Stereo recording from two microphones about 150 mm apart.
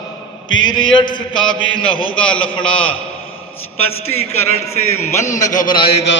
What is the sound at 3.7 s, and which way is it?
A man's voice, 40° left (ahead or behind).